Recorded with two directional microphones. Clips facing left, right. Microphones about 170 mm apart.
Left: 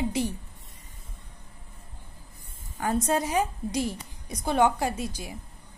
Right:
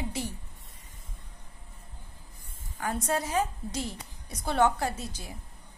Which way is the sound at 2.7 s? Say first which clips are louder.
Left 4 dB; 20° left (ahead or behind).